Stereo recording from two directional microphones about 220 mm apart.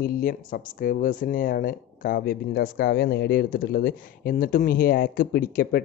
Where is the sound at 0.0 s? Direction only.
40° left (ahead or behind).